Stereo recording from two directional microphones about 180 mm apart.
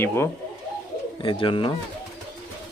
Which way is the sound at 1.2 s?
25° left (ahead or behind).